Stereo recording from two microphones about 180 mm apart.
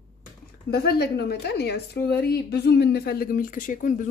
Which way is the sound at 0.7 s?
60° left (ahead or behind).